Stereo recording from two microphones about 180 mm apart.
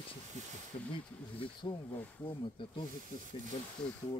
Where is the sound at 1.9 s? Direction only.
10° left (ahead or behind).